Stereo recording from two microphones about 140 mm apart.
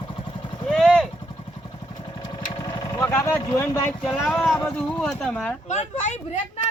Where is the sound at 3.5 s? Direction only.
25° left (ahead or behind).